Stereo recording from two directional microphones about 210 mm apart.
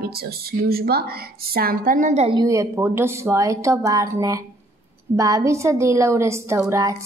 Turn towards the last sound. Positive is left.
turn(degrees=-15)  # may be behind; listen again after turning